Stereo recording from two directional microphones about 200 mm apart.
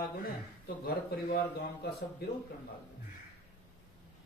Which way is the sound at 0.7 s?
50° left (ahead or behind).